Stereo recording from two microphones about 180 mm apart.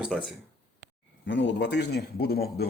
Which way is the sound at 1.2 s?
85° left.